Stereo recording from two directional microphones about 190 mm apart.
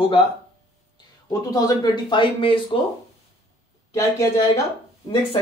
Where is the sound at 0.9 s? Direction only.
20° left (ahead or behind).